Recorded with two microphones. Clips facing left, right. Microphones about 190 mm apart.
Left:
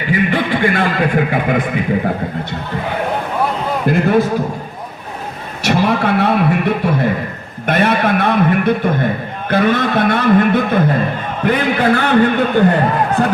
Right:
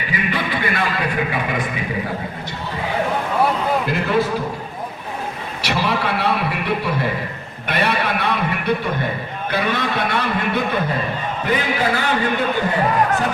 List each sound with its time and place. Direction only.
0.1 s a man's voice: 50° left (ahead or behind)
3.8 s a man's voice: 50° left (ahead or behind)
5.6 s a man's voice: 50° left (ahead or behind)